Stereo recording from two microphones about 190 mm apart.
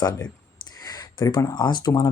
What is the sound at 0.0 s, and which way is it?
Speech, 20° left (ahead or behind).